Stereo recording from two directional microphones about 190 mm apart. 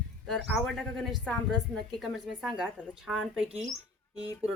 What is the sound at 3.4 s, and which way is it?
Speech, 30° right (ahead or behind).